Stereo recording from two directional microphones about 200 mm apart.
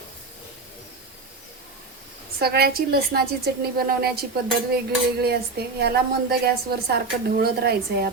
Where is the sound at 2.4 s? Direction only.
50° right (ahead or behind).